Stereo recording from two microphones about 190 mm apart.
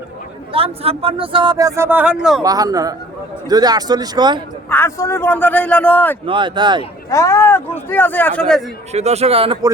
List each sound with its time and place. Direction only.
0.5 s speech: 30° right (ahead or behind); by 2.4 s 5° right (ahead or behind)
2.4 s speech: 20° right (ahead or behind)
4.7 s speech: 15° left (ahead or behind)
6.2 s speech: 25° right (ahead or behind)
7.1 s speech: 15° left (ahead or behind)
8.9 s speech: 35° right (ahead or behind)